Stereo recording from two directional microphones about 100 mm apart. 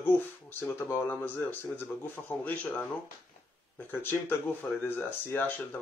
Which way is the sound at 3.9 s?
20° left (ahead or behind).